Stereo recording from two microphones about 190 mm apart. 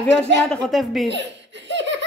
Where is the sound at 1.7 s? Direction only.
70° right (ahead or behind).